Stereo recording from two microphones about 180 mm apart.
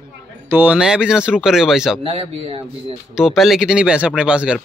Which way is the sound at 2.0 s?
30° right (ahead or behind).